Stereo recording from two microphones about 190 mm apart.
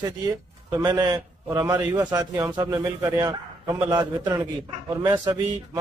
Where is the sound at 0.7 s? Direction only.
20° right (ahead or behind).